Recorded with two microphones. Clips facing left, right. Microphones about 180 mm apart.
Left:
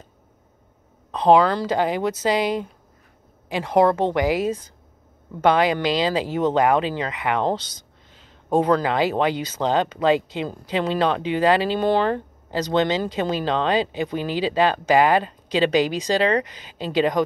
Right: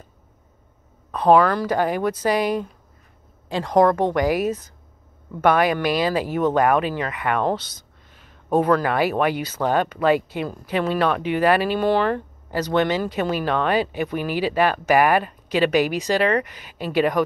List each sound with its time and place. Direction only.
1.1 s speech: 20° left (ahead or behind)